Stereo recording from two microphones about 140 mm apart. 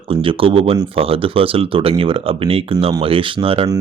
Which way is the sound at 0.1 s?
40° right (ahead or behind).